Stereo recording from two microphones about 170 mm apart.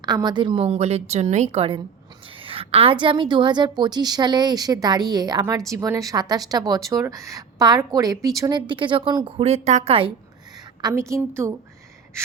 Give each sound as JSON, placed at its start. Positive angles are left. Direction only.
{"t": 0.0, "sound": "a woman's voice", "side_deg": -25}
{"t": 10.8, "sound": "a woman's voice", "side_deg": -20}